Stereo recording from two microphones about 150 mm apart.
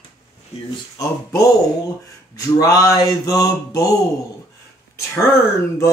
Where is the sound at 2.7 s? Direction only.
25° left (ahead or behind).